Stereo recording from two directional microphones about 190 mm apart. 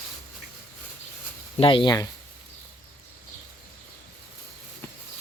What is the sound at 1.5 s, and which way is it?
Speech, 30° left (ahead or behind).